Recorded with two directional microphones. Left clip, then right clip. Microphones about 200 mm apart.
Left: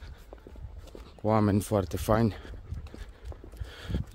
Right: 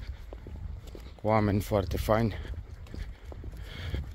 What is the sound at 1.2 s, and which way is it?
Speech, 30° left (ahead or behind).